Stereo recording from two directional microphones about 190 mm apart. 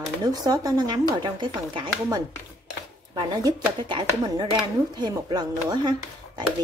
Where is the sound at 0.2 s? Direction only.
20° right (ahead or behind).